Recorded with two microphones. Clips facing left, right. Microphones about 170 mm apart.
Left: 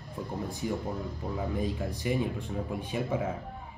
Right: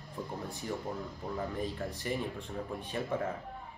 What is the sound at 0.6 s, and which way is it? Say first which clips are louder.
Speech: left 4 dB; 10° left (ahead or behind).